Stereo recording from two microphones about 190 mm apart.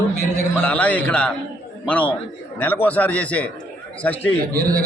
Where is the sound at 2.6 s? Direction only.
10° left (ahead or behind).